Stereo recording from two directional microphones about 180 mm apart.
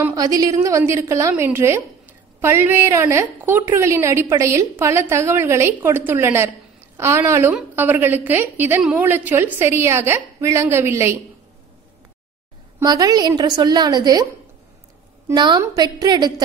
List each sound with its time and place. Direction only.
0.0 s a woman's voice: 20° right (ahead or behind)
12.7 s a woman's voice: 20° right (ahead or behind)
15.2 s a woman's voice: 25° right (ahead or behind)